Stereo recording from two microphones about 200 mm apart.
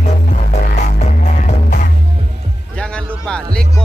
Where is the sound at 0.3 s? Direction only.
40° left (ahead or behind).